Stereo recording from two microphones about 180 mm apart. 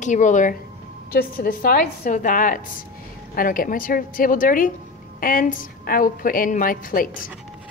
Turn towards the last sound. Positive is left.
turn(degrees=50)  # may be behind; listen again after turning